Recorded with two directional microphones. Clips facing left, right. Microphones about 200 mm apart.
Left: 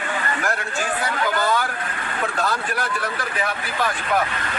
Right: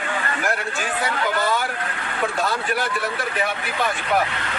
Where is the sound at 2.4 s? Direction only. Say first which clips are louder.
Even; centre (ahead or behind).